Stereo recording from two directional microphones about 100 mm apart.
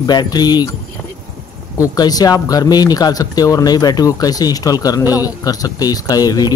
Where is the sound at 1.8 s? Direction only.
40° left (ahead or behind).